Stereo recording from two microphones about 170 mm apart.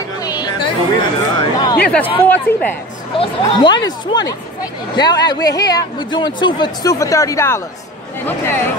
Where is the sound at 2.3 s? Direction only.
10° left (ahead or behind).